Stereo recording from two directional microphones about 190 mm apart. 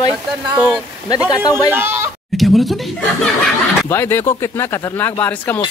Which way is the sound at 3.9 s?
10° left (ahead or behind).